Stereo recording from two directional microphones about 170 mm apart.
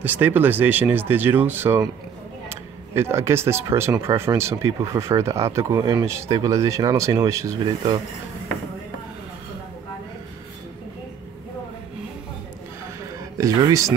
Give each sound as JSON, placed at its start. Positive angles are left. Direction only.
{"t": 0.0, "sound": "speech", "side_deg": -10}
{"t": 13.4, "sound": "speech", "side_deg": -20}